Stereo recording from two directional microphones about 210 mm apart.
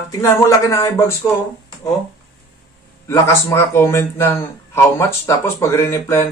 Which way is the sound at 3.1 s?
15° left (ahead or behind).